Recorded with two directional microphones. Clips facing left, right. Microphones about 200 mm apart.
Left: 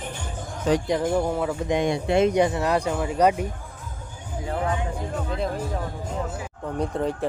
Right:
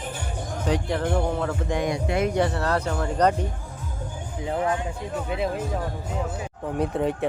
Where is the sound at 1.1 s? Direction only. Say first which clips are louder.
Right 1 dB; 10° left (ahead or behind).